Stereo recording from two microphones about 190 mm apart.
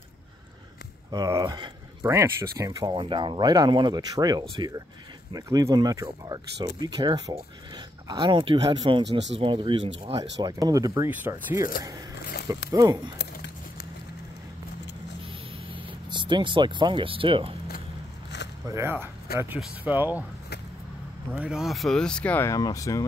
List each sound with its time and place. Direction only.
1.1 s speech: 20° right (ahead or behind)
12.7 s speech: 20° right (ahead or behind)
13.2 s a sound: 65° left (ahead or behind)
15.7 s speech: 25° right (ahead or behind)
18.7 s speech: 15° right (ahead or behind)
19.3 s speech: 55° left (ahead or behind)
19.6 s speech: 10° right (ahead or behind)
21.4 s speech: 5° right (ahead or behind); by 23.0 s 15° left (ahead or behind)